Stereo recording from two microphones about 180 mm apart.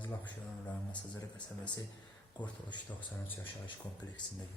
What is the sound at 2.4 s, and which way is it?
Speech, 25° left (ahead or behind).